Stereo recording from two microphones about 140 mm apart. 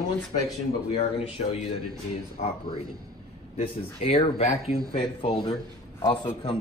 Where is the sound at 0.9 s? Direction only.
45° left (ahead or behind).